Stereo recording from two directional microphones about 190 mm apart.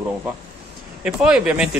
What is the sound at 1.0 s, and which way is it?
Speech, 5° right (ahead or behind).